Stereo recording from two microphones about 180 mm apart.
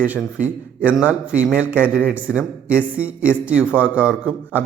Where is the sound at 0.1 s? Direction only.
10° right (ahead or behind).